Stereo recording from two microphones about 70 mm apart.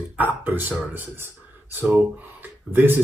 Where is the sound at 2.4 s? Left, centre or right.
Right.